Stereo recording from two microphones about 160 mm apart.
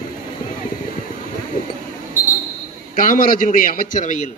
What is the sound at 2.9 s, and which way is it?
A man's voice, 60° left (ahead or behind).